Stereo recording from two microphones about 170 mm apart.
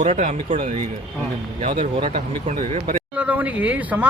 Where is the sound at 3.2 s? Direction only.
10° right (ahead or behind).